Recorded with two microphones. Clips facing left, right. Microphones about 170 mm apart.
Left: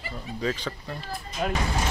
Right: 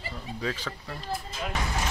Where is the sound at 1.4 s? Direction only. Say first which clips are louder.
Left 10 dB; 55° left (ahead or behind).